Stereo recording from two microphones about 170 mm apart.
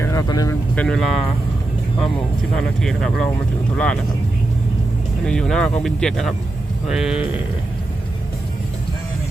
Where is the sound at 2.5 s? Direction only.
Centre (ahead or behind).